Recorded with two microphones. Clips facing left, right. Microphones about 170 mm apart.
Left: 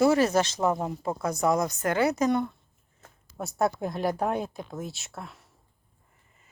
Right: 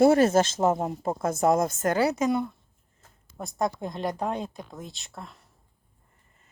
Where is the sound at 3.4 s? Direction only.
5° left (ahead or behind).